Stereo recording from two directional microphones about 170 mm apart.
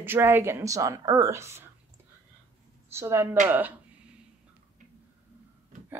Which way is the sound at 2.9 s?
15° right (ahead or behind).